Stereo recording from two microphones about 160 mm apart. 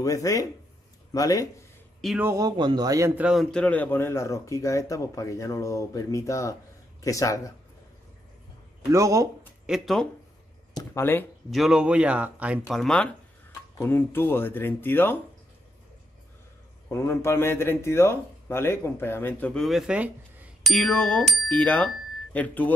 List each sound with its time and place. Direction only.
0.0 s speech: 20° left (ahead or behind)
2.1 s speech: 15° right (ahead or behind)
3.2 s speech: 5° right (ahead or behind)
3.5 s speech: 10° left (ahead or behind)
8.9 s speech: 20° right (ahead or behind)
9.7 s speech: centre (ahead or behind)
10.7 s speech: 15° left (ahead or behind)
11.5 s speech: 5° right (ahead or behind); by 15.1 s 15° left (ahead or behind)
16.9 s a man's voice: 15° left (ahead or behind)